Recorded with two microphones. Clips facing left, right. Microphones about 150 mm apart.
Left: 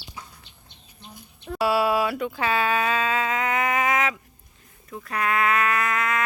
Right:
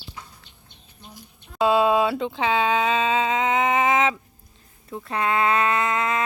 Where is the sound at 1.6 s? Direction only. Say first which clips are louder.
Right 3 dB; 20° right (ahead or behind).